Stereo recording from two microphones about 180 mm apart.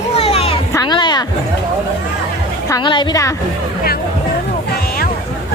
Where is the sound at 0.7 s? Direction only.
20° left (ahead or behind).